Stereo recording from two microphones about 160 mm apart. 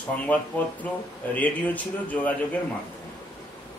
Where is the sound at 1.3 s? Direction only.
10° left (ahead or behind).